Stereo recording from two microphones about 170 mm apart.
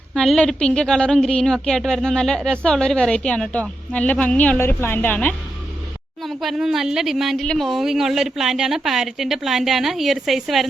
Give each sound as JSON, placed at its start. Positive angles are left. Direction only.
{"t": 0.1, "sound": "a woman's voice", "side_deg": 5}
{"t": 6.2, "sound": "a woman's voice", "side_deg": 0}